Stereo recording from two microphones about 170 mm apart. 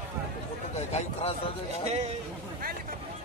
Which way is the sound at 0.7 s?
40° left (ahead or behind).